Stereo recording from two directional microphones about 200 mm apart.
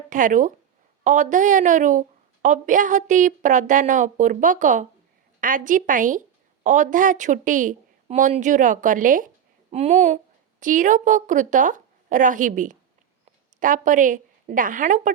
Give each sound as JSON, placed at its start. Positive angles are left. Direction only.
{"t": 0.1, "sound": "a woman's voice", "side_deg": -40}